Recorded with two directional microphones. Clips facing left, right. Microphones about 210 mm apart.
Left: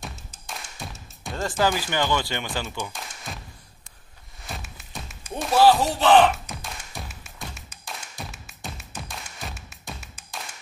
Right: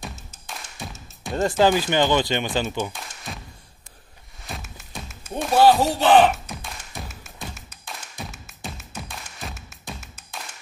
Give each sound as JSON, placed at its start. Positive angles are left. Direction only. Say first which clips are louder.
{"t": 0.0, "sound": "music", "louder": "right 2 dB", "side_deg": 0}
{"t": 1.3, "sound": "speech", "louder": "right 5 dB", "side_deg": -20}
{"t": 3.3, "sound": "music", "louder": "right 2 dB", "side_deg": 0}
{"t": 4.5, "sound": "music", "louder": "right 1 dB", "side_deg": 0}